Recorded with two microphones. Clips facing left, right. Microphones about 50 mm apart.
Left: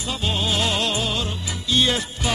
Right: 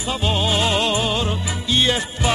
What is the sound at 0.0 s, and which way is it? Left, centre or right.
Music, centre.